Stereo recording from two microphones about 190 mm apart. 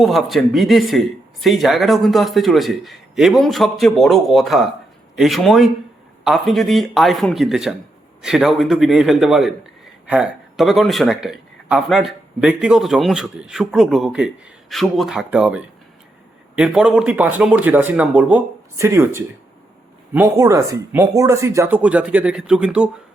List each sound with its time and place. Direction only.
0.0 s speech: centre (ahead or behind)